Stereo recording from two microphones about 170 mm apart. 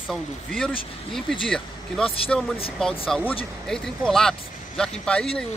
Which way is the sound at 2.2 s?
5° left (ahead or behind).